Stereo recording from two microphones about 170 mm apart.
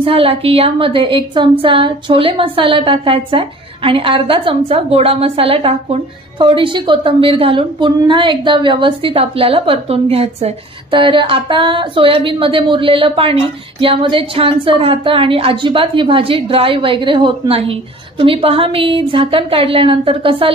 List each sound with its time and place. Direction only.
0.0 s a woman's voice: 35° right (ahead or behind)